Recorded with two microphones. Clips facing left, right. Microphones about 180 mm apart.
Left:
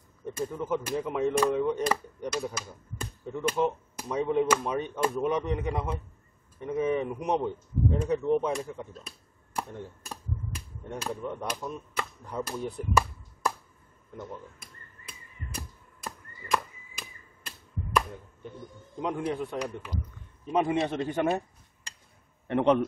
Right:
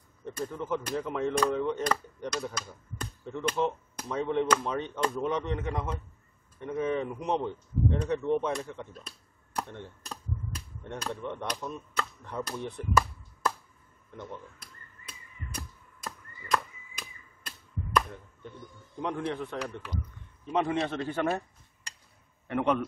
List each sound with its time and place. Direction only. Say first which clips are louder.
0.2 s speech: left 2 dB; 5° left (ahead or behind)
9.6 s a sound: left 1 dB; 5° left (ahead or behind)
15.5 s chop: left 1 dB; 10° left (ahead or behind)
17.5 s a sound: left 1 dB; 10° left (ahead or behind)
18.9 s speech: left 2 dB; 10° left (ahead or behind)
22.5 s a man's voice: left 4 dB; 25° left (ahead or behind)